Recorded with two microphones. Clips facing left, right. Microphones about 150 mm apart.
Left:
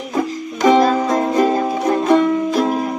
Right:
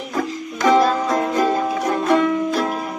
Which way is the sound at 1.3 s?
30° left (ahead or behind).